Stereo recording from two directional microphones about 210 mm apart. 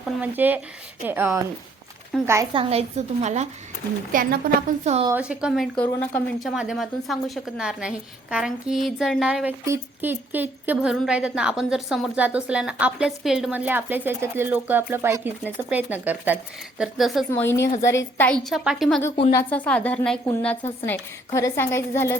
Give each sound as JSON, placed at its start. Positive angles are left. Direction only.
{"t": 0.0, "sound": "speech", "side_deg": -10}
{"t": 2.5, "sound": "speech", "side_deg": -25}
{"t": 4.1, "sound": "a woman's voice", "side_deg": -45}
{"t": 5.0, "sound": "speech", "side_deg": -10}
{"t": 17.4, "sound": "a woman's voice", "side_deg": 10}
{"t": 18.4, "sound": "a woman's voice", "side_deg": 0}